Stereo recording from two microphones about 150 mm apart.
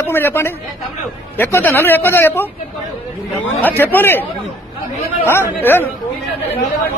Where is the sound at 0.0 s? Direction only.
15° left (ahead or behind).